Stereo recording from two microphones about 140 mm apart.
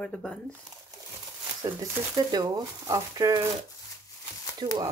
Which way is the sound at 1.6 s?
25° right (ahead or behind).